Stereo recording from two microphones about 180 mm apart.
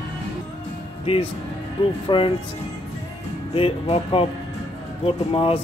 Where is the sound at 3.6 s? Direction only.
30° left (ahead or behind).